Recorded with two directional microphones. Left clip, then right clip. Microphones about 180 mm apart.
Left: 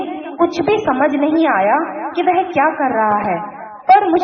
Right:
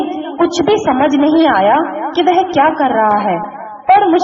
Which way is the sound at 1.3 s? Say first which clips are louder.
Right 5 dB; 30° right (ahead or behind).